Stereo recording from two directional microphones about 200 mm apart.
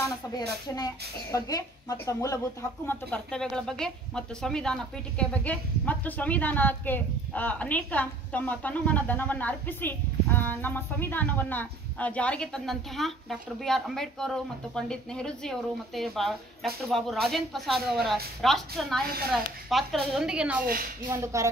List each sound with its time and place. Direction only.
0.7 s speech: 20° left (ahead or behind)
2.9 s speech: 5° left (ahead or behind)
19.0 s speech: 50° right (ahead or behind)
19.3 s speech: centre (ahead or behind)
20.6 s speech: 45° right (ahead or behind)
21.1 s speech: 15° right (ahead or behind)